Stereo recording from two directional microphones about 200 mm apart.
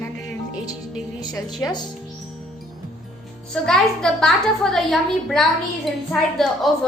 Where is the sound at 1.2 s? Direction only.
20° left (ahead or behind).